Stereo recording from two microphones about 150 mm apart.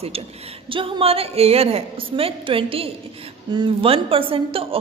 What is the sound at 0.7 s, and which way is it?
A woman's voice, 35° right (ahead or behind).